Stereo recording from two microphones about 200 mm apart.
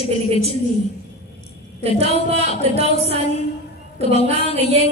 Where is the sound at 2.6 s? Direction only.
30° right (ahead or behind).